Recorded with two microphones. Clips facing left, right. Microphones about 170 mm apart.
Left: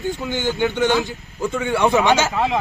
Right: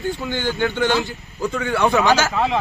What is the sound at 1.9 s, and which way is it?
Speech, 25° left (ahead or behind).